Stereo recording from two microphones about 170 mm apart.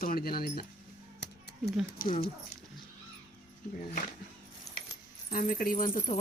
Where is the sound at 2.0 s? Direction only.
55° left (ahead or behind).